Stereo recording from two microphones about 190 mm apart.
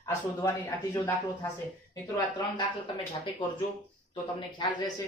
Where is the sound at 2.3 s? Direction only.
25° left (ahead or behind).